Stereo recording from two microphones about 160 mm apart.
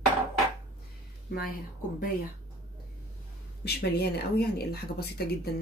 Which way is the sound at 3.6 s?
85° left.